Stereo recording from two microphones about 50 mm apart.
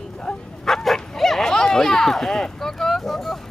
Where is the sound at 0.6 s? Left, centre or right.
Centre.